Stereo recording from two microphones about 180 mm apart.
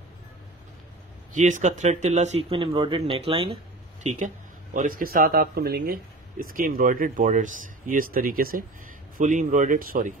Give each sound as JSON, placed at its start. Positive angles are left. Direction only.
{"t": 1.3, "sound": "speech", "side_deg": -45}
{"t": 4.7, "sound": "speech", "side_deg": -50}